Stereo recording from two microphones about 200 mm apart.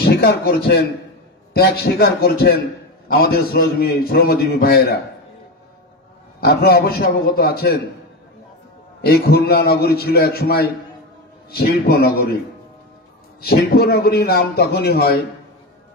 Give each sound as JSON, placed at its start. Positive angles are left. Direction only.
{"t": 0.0, "sound": "a man's voice", "side_deg": 55}
{"t": 6.4, "sound": "a man's voice", "side_deg": 50}
{"t": 9.0, "sound": "a man's voice", "side_deg": 50}
{"t": 13.4, "sound": "a man's voice", "side_deg": 50}